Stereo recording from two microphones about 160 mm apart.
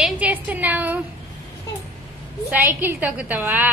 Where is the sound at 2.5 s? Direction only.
10° right (ahead or behind).